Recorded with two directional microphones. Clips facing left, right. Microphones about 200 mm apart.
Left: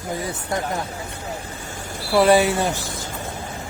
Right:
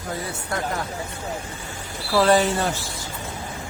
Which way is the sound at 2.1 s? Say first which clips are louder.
Left 2 dB; 10° left (ahead or behind).